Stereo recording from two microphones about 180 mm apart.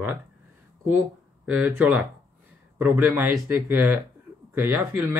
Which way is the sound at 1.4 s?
10° right (ahead or behind).